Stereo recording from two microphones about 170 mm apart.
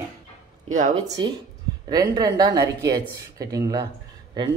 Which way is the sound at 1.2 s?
25° right (ahead or behind).